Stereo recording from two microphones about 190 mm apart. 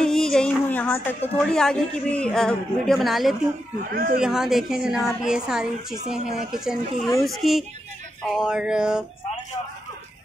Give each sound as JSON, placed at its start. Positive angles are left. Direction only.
{"t": 0.0, "sound": "a woman's voice", "side_deg": 5}
{"t": 3.9, "sound": "speech", "side_deg": -50}
{"t": 4.2, "sound": "a woman's voice", "side_deg": -5}